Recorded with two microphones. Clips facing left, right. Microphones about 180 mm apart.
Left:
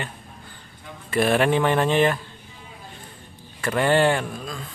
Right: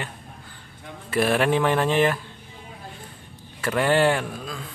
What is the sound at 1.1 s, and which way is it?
Speech, centre (ahead or behind).